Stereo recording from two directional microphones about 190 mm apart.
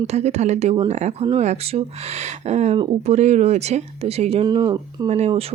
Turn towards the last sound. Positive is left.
turn(degrees=-30)  # may be behind; listen again after turning